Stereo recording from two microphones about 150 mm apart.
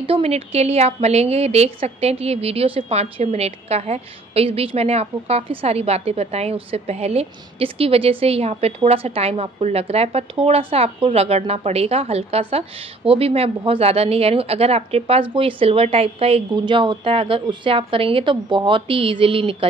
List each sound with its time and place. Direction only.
0.0 s a woman's voice: 40° right (ahead or behind)